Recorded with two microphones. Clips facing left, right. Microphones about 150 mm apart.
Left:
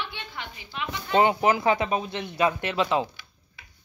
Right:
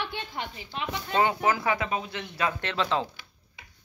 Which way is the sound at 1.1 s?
20° left (ahead or behind).